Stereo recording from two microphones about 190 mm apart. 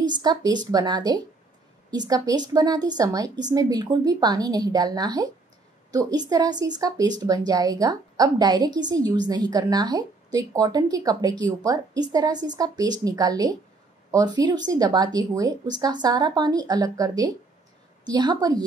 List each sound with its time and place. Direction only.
0.0 s a woman's voice: 20° right (ahead or behind)